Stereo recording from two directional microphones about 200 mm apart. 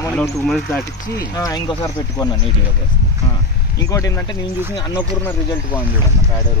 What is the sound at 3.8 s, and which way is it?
Speech, 15° left (ahead or behind).